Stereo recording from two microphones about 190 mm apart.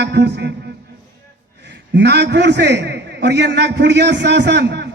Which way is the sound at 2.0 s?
60° right (ahead or behind).